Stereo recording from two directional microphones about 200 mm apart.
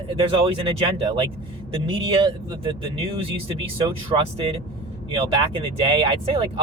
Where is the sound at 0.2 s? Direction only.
25° right (ahead or behind).